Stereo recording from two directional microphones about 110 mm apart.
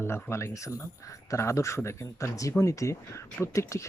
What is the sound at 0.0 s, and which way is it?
Speech, 25° left (ahead or behind).